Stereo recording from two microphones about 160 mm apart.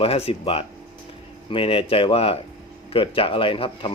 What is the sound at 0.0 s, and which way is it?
A man's voice, 35° left (ahead or behind).